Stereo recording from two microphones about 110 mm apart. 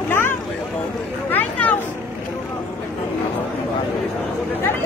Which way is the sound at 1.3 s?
15° left (ahead or behind).